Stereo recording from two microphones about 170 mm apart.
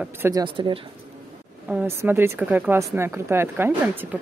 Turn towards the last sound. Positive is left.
turn(degrees=-10)  # may be behind; listen again after turning